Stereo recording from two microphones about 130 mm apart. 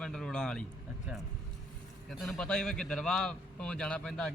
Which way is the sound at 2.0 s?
Centre (ahead or behind).